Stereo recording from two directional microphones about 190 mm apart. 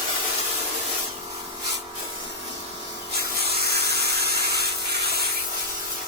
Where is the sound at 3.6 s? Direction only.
55° right (ahead or behind).